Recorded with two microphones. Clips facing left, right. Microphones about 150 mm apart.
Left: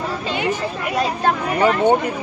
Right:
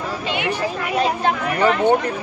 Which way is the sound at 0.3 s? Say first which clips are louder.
Even; 40° left (ahead or behind).